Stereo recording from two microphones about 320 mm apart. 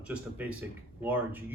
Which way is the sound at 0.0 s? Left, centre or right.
Centre.